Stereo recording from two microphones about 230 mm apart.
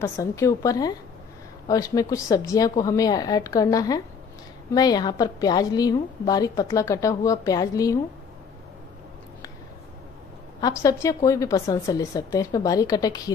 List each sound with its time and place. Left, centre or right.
0.0 s a woman's voice: centre
10.6 s a woman's voice: centre